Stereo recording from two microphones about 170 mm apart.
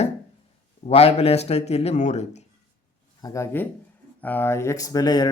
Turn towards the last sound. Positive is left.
turn(degrees=25)  # may be behind; listen again after turning